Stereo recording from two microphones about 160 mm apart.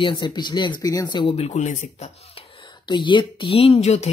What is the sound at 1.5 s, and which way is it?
Speech, 50° left (ahead or behind).